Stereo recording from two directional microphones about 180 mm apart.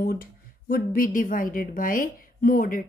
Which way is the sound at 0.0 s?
55° left (ahead or behind).